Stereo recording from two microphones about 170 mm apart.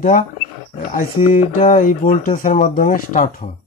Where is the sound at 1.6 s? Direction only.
50° left (ahead or behind).